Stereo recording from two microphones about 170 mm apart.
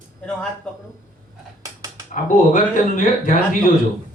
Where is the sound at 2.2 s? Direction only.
50° left (ahead or behind).